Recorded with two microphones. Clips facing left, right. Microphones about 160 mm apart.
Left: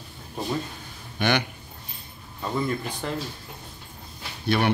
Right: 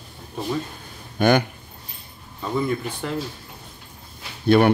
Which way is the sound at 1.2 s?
45° right (ahead or behind).